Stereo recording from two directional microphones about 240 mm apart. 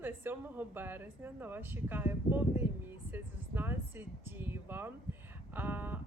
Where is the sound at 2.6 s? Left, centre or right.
Centre.